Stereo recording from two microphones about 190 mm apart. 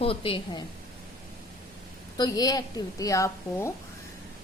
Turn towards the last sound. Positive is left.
turn(degrees=15)  # may be behind; listen again after turning